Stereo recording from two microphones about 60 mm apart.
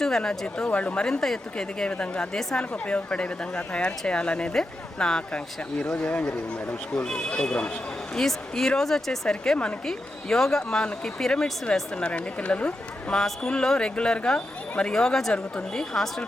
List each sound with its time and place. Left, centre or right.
0.0 s speech: centre
1.0 s speech: centre
6.0 s a man's voice: left
8.1 s speech: centre